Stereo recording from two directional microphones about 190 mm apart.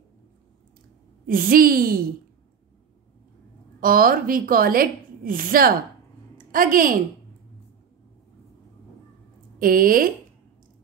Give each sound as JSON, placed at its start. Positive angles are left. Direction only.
{"t": 1.2, "sound": "a woman's voice", "side_deg": -50}
{"t": 3.8, "sound": "a woman's voice", "side_deg": -50}
{"t": 9.6, "sound": "a woman's voice", "side_deg": -50}